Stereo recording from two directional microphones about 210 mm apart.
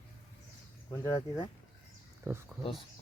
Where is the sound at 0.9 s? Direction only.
15° left (ahead or behind).